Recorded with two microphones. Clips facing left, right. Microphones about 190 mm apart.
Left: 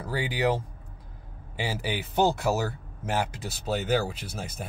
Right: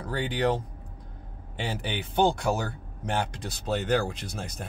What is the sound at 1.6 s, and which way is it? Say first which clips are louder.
Speech: left 1 dB; 5° left (ahead or behind).